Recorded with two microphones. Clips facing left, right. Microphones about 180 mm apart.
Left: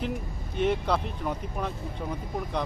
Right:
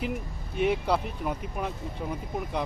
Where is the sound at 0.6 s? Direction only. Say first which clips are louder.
Even; 10° right (ahead or behind).